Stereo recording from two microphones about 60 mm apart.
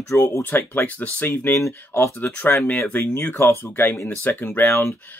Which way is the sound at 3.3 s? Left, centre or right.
Left.